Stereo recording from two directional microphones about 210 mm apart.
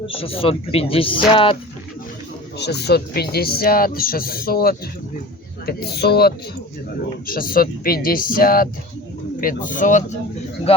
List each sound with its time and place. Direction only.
0.1 s speech: 25° left (ahead or behind)
2.6 s speech: 50° left (ahead or behind)
10.7 s speech: 30° left (ahead or behind)